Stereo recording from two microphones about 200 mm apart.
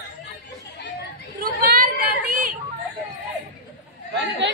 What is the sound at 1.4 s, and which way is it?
Chatter, 45° right (ahead or behind).